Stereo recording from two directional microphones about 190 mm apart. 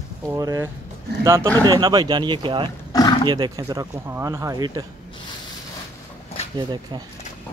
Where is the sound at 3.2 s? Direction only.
20° right (ahead or behind).